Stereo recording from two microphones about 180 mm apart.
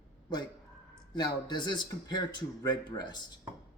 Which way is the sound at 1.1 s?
25° left (ahead or behind).